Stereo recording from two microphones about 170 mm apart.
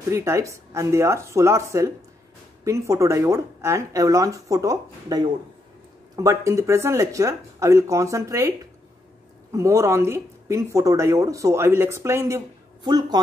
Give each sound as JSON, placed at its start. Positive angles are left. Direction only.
{"t": 0.1, "sound": "speech", "side_deg": -15}